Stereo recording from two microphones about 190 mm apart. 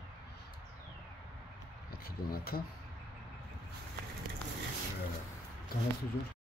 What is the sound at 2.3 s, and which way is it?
Speech, 50° left (ahead or behind).